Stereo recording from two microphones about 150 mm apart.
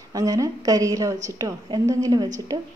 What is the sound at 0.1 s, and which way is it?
Speech, 25° right (ahead or behind).